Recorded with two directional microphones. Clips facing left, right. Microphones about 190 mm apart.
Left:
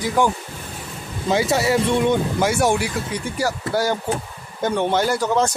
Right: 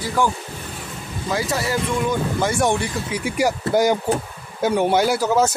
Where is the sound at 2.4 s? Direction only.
5° left (ahead or behind).